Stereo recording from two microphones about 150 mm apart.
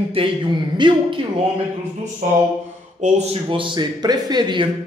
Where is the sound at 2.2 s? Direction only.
60° right (ahead or behind).